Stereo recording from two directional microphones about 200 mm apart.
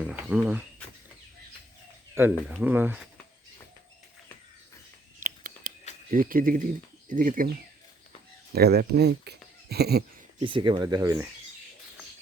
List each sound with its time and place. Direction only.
0.0 s speech: 5° right (ahead or behind)
2.1 s speech: 10° right (ahead or behind)
5.2 s a sound: 45° right (ahead or behind)
6.1 s speech: 45° right (ahead or behind)
8.5 s speech: 50° right (ahead or behind)
10.4 s speech: 25° right (ahead or behind)